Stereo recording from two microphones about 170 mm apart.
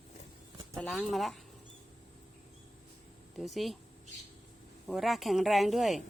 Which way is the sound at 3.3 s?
Centre (ahead or behind).